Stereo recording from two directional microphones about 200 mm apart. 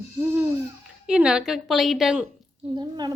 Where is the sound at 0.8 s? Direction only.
5° right (ahead or behind).